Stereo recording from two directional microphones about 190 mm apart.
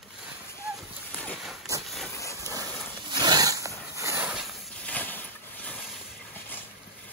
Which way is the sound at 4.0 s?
10° right (ahead or behind).